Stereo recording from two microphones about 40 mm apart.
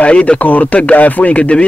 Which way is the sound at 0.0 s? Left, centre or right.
Left.